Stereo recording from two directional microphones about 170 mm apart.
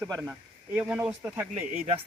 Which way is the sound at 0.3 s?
10° right (ahead or behind).